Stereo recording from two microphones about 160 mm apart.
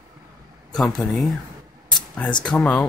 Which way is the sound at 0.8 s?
Centre (ahead or behind).